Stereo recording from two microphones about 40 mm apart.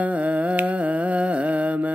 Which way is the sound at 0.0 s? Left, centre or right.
Right.